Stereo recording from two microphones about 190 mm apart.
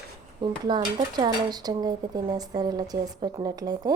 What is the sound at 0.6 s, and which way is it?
Speech, 20° right (ahead or behind).